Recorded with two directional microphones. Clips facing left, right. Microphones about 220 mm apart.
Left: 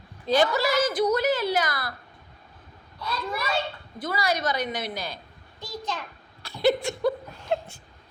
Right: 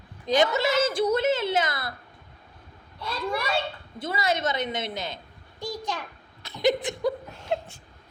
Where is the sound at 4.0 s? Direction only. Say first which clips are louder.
Even; 25° right (ahead or behind).